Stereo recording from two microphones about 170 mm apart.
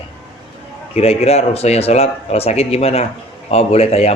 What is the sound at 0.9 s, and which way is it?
Speech, 35° left (ahead or behind).